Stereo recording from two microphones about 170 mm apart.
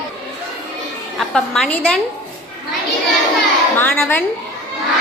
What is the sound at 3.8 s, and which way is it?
Speech, 10° left (ahead or behind).